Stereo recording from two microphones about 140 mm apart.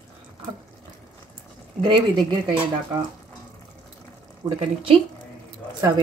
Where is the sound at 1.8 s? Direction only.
40° right (ahead or behind).